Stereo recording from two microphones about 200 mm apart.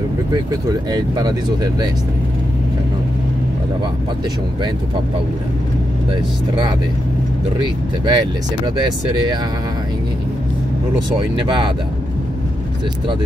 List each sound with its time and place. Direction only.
0.3 s speech: 20° right (ahead or behind)
8.0 s speech: 20° right (ahead or behind)
11.1 s speech: 25° right (ahead or behind)